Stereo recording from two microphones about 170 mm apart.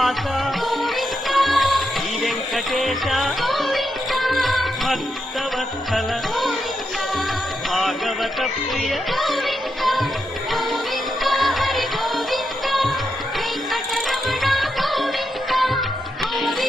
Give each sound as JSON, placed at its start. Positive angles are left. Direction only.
{"t": 0.0, "sound": "music", "side_deg": 0}
{"t": 7.7, "sound": "music", "side_deg": 0}
{"t": 11.2, "sound": "music", "side_deg": 0}
{"t": 13.9, "sound": "music of bollywood", "side_deg": 0}
{"t": 16.4, "sound": "music", "side_deg": 0}